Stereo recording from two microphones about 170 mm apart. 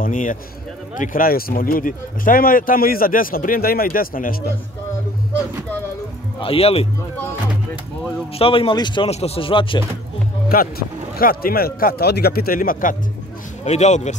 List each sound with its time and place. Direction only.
0.0 s speech: 50° left (ahead or behind)
6.4 s speech: 35° left (ahead or behind)
8.4 s speech: 30° left (ahead or behind)
10.5 s speech: 60° left (ahead or behind)
13.7 s speech: 40° left (ahead or behind)